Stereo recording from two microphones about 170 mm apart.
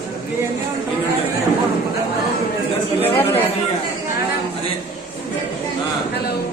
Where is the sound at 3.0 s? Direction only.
15° left (ahead or behind).